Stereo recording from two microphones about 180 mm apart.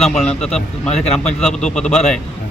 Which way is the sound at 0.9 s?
40° left (ahead or behind).